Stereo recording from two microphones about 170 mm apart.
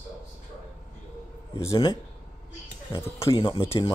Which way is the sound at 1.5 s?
20° left (ahead or behind).